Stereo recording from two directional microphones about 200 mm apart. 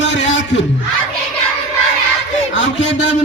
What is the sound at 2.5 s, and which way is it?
Speech, 70° left (ahead or behind).